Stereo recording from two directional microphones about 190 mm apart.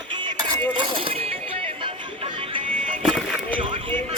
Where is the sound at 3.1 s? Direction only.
Centre (ahead or behind).